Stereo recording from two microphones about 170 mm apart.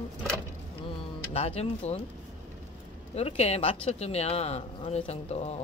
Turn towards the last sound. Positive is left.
turn(degrees=40)  # may be behind; listen again after turning